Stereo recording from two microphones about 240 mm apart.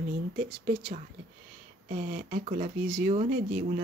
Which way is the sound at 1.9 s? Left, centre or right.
Right.